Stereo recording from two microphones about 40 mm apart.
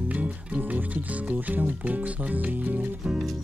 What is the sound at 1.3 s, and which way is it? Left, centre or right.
Speech, right.